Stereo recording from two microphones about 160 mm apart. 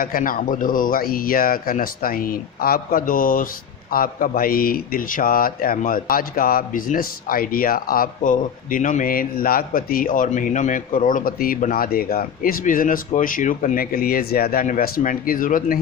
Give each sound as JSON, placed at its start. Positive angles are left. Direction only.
{"t": 0.0, "sound": "a man's voice", "side_deg": 65}